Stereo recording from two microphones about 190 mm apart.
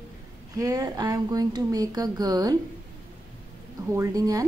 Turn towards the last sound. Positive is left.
turn(degrees=-20)  # may be behind; listen again after turning